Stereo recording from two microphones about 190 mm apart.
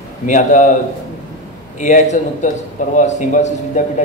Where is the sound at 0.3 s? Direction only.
40° left (ahead or behind).